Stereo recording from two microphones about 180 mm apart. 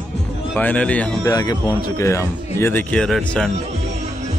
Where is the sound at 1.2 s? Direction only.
20° left (ahead or behind); by 3.5 s 5° left (ahead or behind).